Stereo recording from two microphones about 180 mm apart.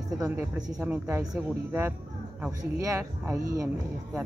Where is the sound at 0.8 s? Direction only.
10° right (ahead or behind).